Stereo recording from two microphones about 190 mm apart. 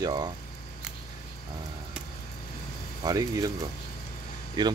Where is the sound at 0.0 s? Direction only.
20° right (ahead or behind).